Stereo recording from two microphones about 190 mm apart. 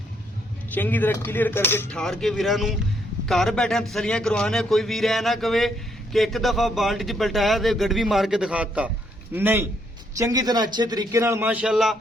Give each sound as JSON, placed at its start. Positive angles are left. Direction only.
{"t": 0.7, "sound": "a man's voice", "side_deg": 10}